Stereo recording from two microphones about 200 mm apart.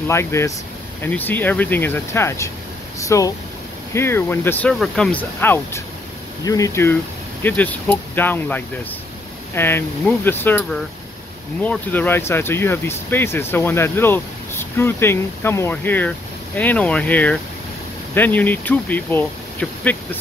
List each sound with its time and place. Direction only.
0.1 s speech: 15° left (ahead or behind)